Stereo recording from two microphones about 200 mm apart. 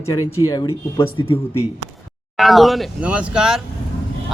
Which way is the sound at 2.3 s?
Centre (ahead or behind).